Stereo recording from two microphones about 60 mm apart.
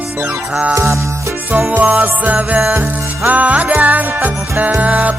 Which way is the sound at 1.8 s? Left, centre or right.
Right.